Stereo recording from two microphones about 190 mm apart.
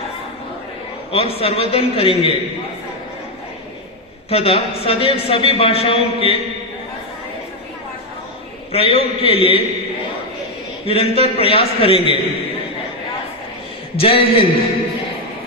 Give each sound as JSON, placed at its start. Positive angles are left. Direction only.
{"t": 1.1, "sound": "a man's voice", "side_deg": 30}
{"t": 4.3, "sound": "a man's voice", "side_deg": 30}
{"t": 8.7, "sound": "a man's voice", "side_deg": 30}
{"t": 10.9, "sound": "a man's voice", "side_deg": 30}
{"t": 13.9, "sound": "a man's voice", "side_deg": 30}